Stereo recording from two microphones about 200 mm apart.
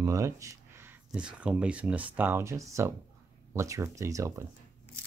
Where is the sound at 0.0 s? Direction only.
15° right (ahead or behind).